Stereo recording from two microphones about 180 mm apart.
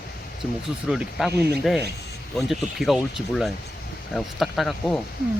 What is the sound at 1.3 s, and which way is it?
Speech, 65° right (ahead or behind).